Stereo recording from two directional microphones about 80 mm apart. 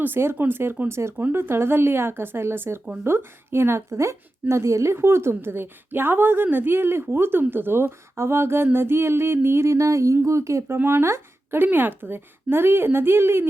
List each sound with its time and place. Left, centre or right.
0.0 s speech: right